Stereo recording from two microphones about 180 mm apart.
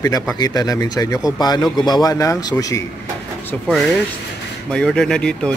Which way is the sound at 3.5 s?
Centre (ahead or behind).